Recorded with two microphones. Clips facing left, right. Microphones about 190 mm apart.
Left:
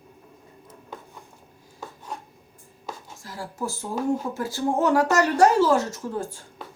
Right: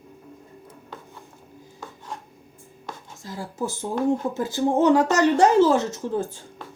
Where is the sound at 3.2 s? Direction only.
20° right (ahead or behind).